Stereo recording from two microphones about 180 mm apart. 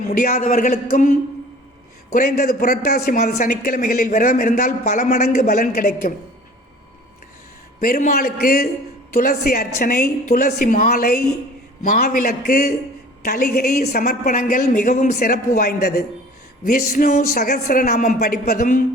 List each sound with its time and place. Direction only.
0.1 s speech: 45° left (ahead or behind)
2.1 s a man's voice: 55° left (ahead or behind)
7.8 s a man's voice: 50° left (ahead or behind)
16.6 s a man's voice: 50° left (ahead or behind)